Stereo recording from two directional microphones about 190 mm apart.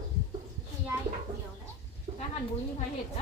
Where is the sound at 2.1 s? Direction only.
20° right (ahead or behind).